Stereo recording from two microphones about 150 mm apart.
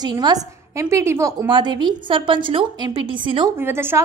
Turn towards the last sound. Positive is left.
turn(degrees=-15)  # may be behind; listen again after turning